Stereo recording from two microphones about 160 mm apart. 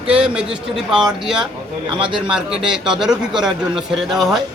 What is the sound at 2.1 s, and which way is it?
A man's voice, 5° right (ahead or behind).